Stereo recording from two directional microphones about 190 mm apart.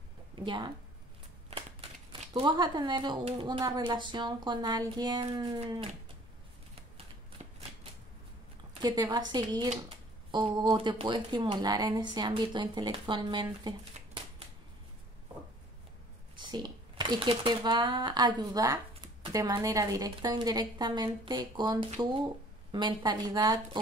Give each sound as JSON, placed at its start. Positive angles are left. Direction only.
{"t": 0.4, "sound": "a woman's voice", "side_deg": -25}
{"t": 2.3, "sound": "a woman's voice", "side_deg": -25}
{"t": 7.4, "sound": "shuffling cards", "side_deg": -35}
{"t": 8.8, "sound": "a woman's voice", "side_deg": -20}
{"t": 16.3, "sound": "a woman's voice", "side_deg": -25}